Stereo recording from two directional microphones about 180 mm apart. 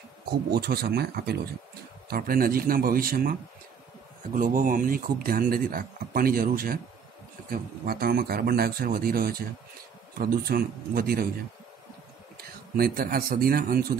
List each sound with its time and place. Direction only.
0.5 s a man's voice: 60° right (ahead or behind)
12.4 s speech: 55° right (ahead or behind)